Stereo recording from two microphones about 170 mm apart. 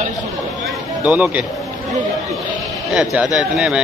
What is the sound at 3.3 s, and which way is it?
Speech, centre (ahead or behind).